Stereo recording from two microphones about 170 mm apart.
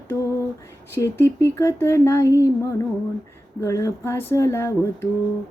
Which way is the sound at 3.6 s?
20° left (ahead or behind).